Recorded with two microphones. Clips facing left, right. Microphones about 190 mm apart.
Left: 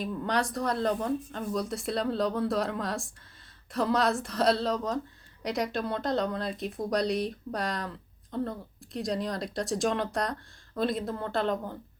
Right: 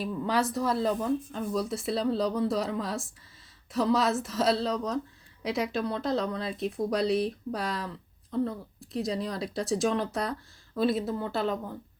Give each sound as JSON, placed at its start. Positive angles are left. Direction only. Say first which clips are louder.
{"t": 0.0, "sound": "speech", "louder": "right 1 dB", "side_deg": -5}